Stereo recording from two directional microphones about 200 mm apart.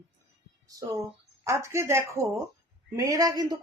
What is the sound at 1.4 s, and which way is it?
Speech, 15° right (ahead or behind).